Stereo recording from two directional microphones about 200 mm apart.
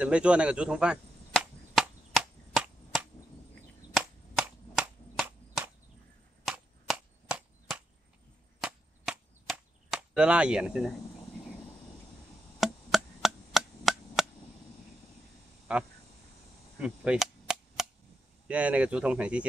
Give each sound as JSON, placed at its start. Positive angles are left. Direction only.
{"t": 0.0, "sound": "chop", "side_deg": -5}
{"t": 3.9, "sound": "cap gun", "side_deg": -5}
{"t": 8.5, "sound": "chop", "side_deg": -5}
{"t": 12.5, "sound": "chop", "side_deg": 0}
{"t": 15.7, "sound": "speech", "side_deg": -5}
{"t": 16.8, "sound": "cap gun", "side_deg": -5}
{"t": 18.5, "sound": "speech", "side_deg": -5}